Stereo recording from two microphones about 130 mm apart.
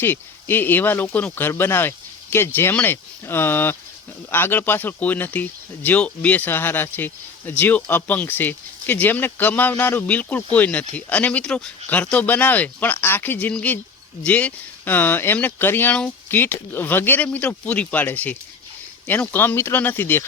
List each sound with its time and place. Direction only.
0.0 s speech: 15° left (ahead or behind)